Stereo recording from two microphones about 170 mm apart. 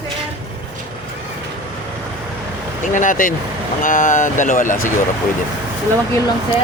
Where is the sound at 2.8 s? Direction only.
50° left (ahead or behind).